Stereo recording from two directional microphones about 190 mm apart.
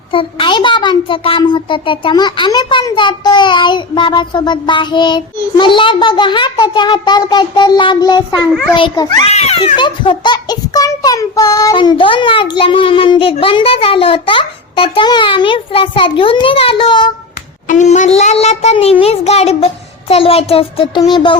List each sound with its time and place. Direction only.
0.1 s a child's voice: 25° left (ahead or behind)
17.7 s a child's voice: 40° left (ahead or behind)